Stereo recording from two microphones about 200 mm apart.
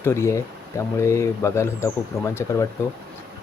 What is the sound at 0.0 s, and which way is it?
Speech, 10° left (ahead or behind).